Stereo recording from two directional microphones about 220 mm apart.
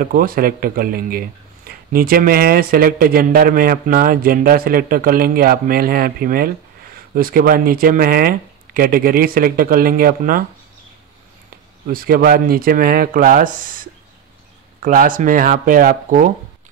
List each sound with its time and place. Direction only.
0.0 s speech: 40° right (ahead or behind)
11.9 s speech: 40° right (ahead or behind)
14.8 s speech: 40° right (ahead or behind)